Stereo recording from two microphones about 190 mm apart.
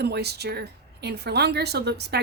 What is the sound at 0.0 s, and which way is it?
A woman's voice, 60° right (ahead or behind).